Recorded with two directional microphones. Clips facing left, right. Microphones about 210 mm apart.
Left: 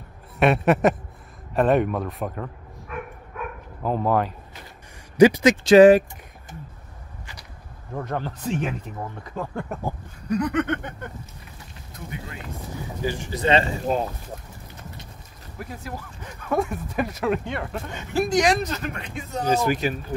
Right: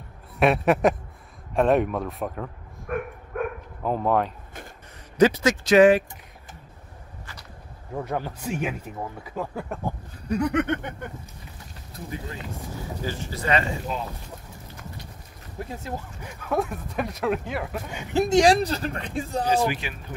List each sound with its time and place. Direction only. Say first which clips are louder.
0.4 s speech: left 1 dB; centre (ahead or behind)
2.9 s dog: right 6 dB; 55° right (ahead or behind)
3.3 s bow-wow: right 6 dB; 55° right (ahead or behind)
3.8 s speech: left 1 dB; centre (ahead or behind)
5.1 s speech: left 4 dB; 15° left (ahead or behind); by 6.0 s 35° left (ahead or behind)
7.9 s speech: even; 10° right (ahead or behind)
11.9 s speech: right 2 dB; 30° right (ahead or behind)
13.0 s speech: left 6 dB; 15° left (ahead or behind)
13.9 s speech: left 11 dB; 45° left (ahead or behind)
15.6 s speech: right 1 dB; 25° right (ahead or behind)
16.2 s speech: left 2 dB; 5° right (ahead or behind)
18.1 s speech: right 2 dB; 25° right (ahead or behind)
19.4 s speech: left 4 dB; 45° left (ahead or behind)